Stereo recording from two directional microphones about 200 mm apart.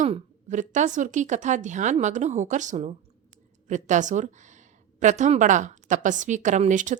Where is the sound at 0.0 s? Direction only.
35° right (ahead or behind).